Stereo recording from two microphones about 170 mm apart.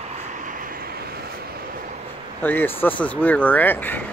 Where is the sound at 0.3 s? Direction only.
50° right (ahead or behind).